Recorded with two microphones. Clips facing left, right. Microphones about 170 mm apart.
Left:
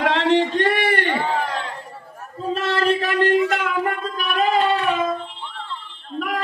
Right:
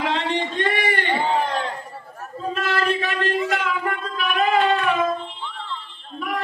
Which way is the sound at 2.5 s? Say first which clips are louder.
Left 3 dB; 30° left (ahead or behind).